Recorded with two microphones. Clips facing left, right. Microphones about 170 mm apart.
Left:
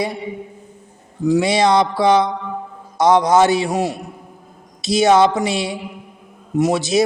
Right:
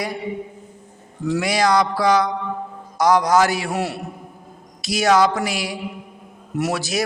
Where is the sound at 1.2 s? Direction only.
20° left (ahead or behind).